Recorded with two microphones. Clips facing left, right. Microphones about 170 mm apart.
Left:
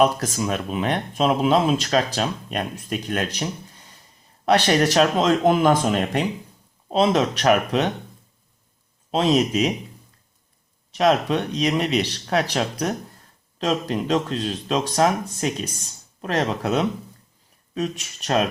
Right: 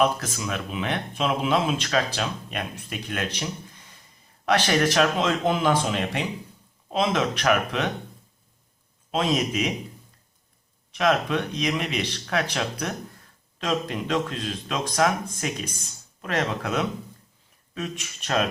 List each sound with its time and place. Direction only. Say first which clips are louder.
0.0 s speech: left 4 dB; 40° left (ahead or behind)
6.9 s speech: left 5 dB; 35° left (ahead or behind)
9.1 s speech: left 5 dB; 35° left (ahead or behind)
10.9 s speech: left 4 dB; 35° left (ahead or behind)